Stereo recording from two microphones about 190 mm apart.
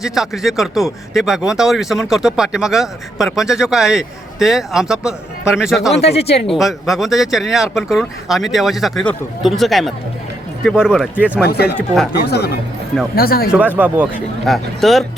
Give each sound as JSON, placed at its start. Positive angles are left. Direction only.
{"t": 0.0, "sound": "speech", "side_deg": 0}
{"t": 5.9, "sound": "speech", "side_deg": 35}
{"t": 6.5, "sound": "speech", "side_deg": 0}
{"t": 11.4, "sound": "speech", "side_deg": 55}
{"t": 13.5, "sound": "speech", "side_deg": -10}